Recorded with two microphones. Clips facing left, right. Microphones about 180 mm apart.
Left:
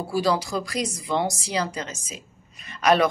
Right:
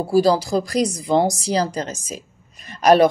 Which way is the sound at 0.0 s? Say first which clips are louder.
Right 7 dB; 35° right (ahead or behind).